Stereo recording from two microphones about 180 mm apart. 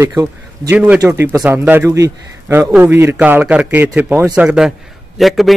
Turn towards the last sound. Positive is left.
turn(degrees=0)  # may be behind; listen again after turning